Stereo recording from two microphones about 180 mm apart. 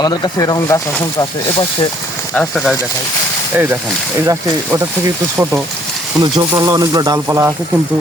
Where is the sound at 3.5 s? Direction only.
15° right (ahead or behind).